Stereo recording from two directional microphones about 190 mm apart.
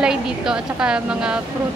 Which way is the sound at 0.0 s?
5° right (ahead or behind).